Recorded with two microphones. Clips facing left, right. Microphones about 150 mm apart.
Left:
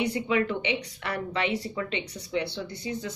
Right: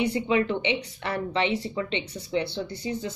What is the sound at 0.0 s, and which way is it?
A woman's voice, 30° right (ahead or behind).